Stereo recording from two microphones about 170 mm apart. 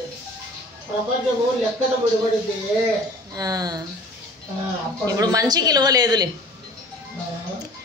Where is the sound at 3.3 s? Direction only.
20° right (ahead or behind).